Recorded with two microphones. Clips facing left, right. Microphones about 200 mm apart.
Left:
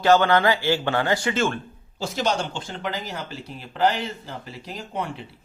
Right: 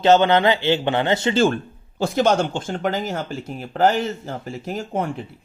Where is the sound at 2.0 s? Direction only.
55° right (ahead or behind).